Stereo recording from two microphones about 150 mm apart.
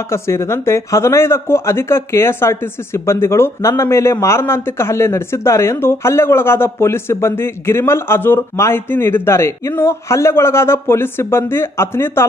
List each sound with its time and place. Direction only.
0.1 s speech: 20° left (ahead or behind)